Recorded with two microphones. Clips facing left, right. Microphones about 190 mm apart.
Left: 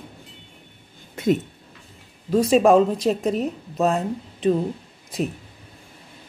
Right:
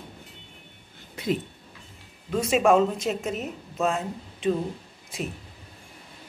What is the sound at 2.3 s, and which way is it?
Speech, 35° left (ahead or behind).